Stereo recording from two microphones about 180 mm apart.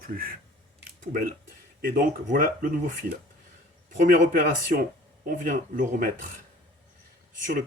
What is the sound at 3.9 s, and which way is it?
Speech, 45° right (ahead or behind).